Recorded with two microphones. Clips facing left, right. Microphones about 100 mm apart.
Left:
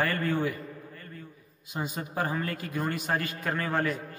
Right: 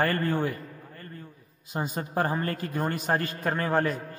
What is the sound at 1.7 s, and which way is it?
A man's voice, 40° right (ahead or behind).